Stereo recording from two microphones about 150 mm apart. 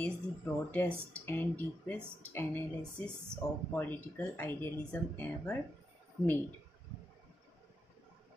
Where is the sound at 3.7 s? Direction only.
10° left (ahead or behind).